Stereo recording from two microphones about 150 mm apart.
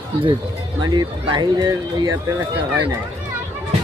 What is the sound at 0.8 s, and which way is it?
Speech, 30° right (ahead or behind).